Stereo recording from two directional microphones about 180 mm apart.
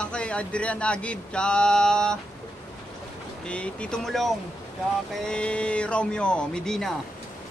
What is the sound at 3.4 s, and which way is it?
Speech, 5° left (ahead or behind).